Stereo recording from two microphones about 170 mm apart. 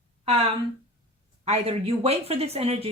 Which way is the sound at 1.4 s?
35° right (ahead or behind).